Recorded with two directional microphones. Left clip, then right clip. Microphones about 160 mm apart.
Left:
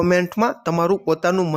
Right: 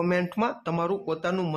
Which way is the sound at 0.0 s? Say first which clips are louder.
Left 8 dB; 30° left (ahead or behind).